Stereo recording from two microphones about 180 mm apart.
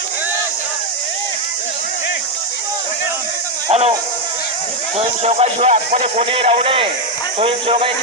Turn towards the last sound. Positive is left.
turn(degrees=-30)  # may be behind; listen again after turning